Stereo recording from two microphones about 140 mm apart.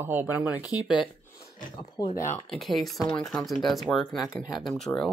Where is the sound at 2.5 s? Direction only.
Centre (ahead or behind).